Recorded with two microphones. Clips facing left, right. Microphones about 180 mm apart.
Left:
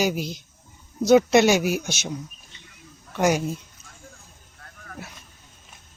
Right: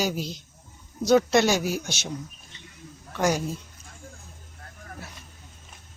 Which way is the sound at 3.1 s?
15° left (ahead or behind).